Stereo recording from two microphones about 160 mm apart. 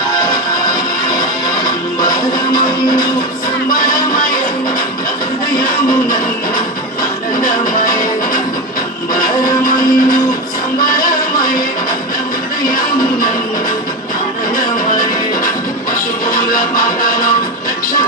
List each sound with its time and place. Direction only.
1.6 s music: 25° left (ahead or behind)
7.4 s music: 60° left (ahead or behind)
9.6 s a sound: 60° left (ahead or behind)
10.8 s music: 60° left (ahead or behind)
16.3 s music: 60° left (ahead or behind)